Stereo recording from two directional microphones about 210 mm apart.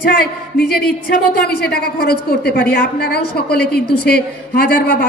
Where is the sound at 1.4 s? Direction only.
50° left (ahead or behind).